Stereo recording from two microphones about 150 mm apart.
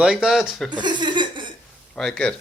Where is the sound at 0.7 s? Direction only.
30° right (ahead or behind).